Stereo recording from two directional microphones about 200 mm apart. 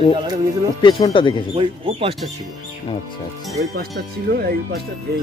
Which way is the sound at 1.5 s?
25° right (ahead or behind).